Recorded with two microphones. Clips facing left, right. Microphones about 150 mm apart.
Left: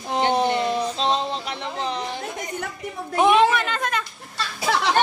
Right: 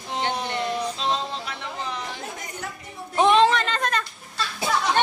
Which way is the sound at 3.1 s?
10° left (ahead or behind).